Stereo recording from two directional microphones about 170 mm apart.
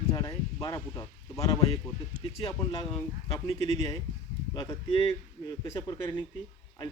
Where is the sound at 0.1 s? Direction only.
20° left (ahead or behind).